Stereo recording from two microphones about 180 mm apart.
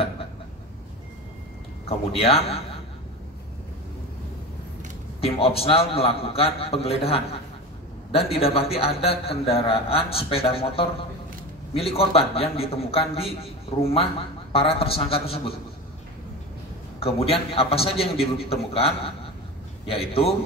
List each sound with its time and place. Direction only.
1.9 s a man's voice: 35° left (ahead or behind)
5.2 s a man's voice: 35° left (ahead or behind)
17.0 s a man's voice: 35° left (ahead or behind)